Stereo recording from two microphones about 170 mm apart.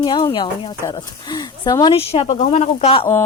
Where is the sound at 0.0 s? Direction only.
25° left (ahead or behind).